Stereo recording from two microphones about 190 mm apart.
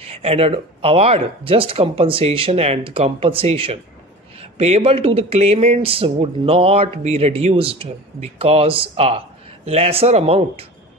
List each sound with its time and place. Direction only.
0.0 s speech: 30° right (ahead or behind)